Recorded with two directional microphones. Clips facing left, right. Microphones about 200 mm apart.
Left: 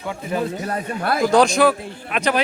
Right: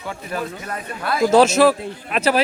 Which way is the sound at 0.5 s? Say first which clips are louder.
Left 5 dB; 35° left (ahead or behind).